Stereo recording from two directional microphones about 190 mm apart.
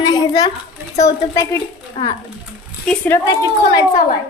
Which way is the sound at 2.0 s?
30° left (ahead or behind).